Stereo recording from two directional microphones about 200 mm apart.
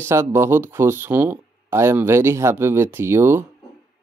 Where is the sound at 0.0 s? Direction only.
10° right (ahead or behind).